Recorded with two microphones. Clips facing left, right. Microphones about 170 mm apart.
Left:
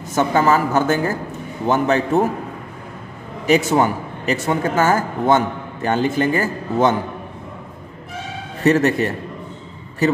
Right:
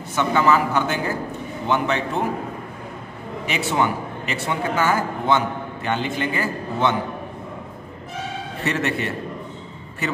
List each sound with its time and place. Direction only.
0.1 s speech: 40° left (ahead or behind)
3.4 s speech: 40° left (ahead or behind)
8.6 s speech: 40° left (ahead or behind)